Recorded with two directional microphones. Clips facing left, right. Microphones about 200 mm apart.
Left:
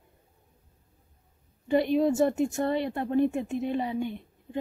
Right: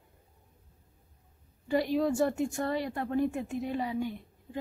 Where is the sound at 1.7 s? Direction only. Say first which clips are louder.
Left 4 dB; 20° left (ahead or behind).